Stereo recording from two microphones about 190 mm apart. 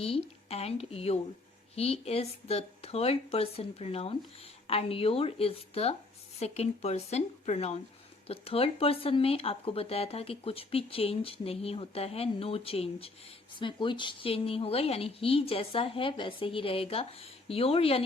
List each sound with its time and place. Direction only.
0.0 s a woman's voice: 30° left (ahead or behind)